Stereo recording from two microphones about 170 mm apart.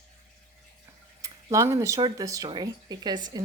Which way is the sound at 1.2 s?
20° right (ahead or behind).